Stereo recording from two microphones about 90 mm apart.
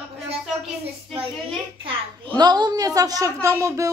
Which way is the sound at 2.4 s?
50° right (ahead or behind).